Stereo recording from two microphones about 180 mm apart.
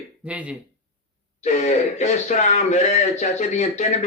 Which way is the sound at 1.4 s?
40° left (ahead or behind).